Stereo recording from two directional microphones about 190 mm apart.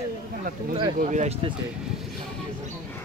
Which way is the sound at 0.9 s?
40° right (ahead or behind).